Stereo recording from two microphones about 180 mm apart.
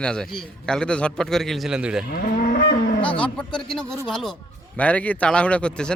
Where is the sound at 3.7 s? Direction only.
Centre (ahead or behind).